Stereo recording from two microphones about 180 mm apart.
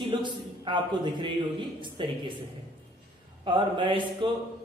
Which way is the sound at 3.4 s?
25° right (ahead or behind).